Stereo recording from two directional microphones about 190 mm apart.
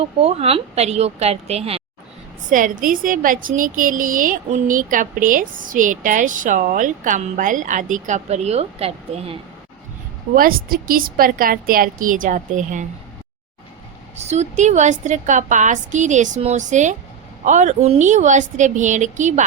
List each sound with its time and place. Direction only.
0.0 s a woman's voice: 30° right (ahead or behind)
2.5 s a woman's voice: 45° right (ahead or behind)
10.3 s a woman's voice: 50° right (ahead or behind)
14.3 s a woman's voice: 35° right (ahead or behind)